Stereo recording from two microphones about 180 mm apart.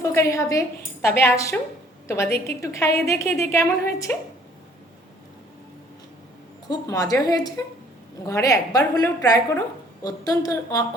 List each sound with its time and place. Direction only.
0.1 s a woman's voice: 15° left (ahead or behind)
6.7 s a woman's voice: 20° left (ahead or behind)